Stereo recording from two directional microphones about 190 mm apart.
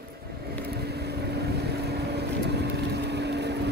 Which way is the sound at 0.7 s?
60° right (ahead or behind).